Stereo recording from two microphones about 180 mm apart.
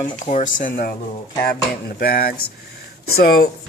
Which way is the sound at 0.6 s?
55° left (ahead or behind).